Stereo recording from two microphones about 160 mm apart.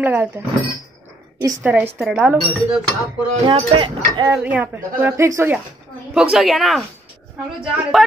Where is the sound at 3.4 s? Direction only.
30° right (ahead or behind).